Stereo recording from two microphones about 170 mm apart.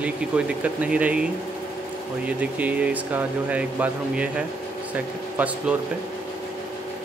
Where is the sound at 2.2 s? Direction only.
10° right (ahead or behind).